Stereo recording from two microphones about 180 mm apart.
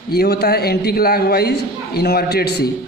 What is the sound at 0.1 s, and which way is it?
A man's voice, 60° left (ahead or behind).